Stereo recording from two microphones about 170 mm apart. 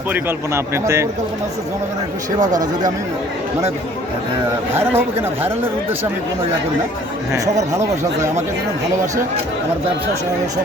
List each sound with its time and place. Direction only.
0.1 s a man's voice: 15° right (ahead or behind)
2.4 s speech: 25° right (ahead or behind)
4.7 s a man's voice: 15° right (ahead or behind)
7.7 s speech: 20° right (ahead or behind)